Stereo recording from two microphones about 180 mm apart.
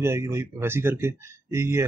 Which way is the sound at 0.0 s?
15° right (ahead or behind).